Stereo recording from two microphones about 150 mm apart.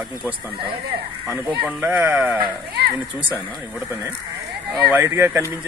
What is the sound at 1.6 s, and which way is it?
Speech, 10° right (ahead or behind).